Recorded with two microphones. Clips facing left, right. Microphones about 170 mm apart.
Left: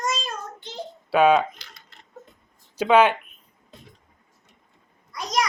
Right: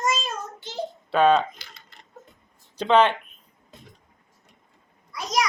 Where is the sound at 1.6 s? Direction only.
5° right (ahead or behind).